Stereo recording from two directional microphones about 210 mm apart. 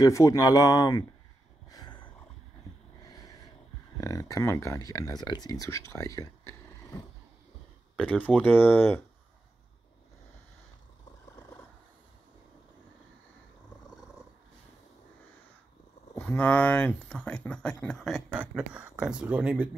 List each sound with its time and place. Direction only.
0.0 s speech: 15° left (ahead or behind)
1.7 s a sound: 20° left (ahead or behind)
3.1 s a sound: 20° left (ahead or behind)
4.0 s speech: 15° left (ahead or behind)
8.0 s speech: 5° left (ahead or behind)
16.2 s speech: 5° left (ahead or behind)